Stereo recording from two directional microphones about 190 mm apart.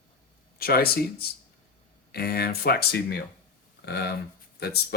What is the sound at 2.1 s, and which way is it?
Speech, 55° left (ahead or behind).